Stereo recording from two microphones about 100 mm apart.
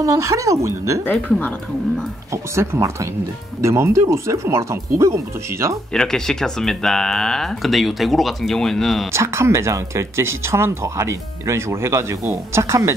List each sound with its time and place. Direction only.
0.0 s speech: 30° right (ahead or behind)
2.3 s speech: 30° right (ahead or behind)
5.9 s speech: 5° left (ahead or behind)
9.1 s speech: 30° right (ahead or behind)